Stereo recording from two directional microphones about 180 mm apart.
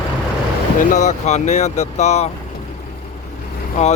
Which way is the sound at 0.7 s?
45° left (ahead or behind).